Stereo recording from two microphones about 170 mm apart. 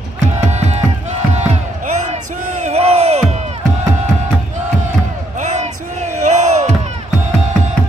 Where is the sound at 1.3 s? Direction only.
40° right (ahead or behind).